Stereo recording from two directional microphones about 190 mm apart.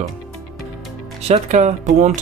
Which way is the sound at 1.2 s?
35° right (ahead or behind).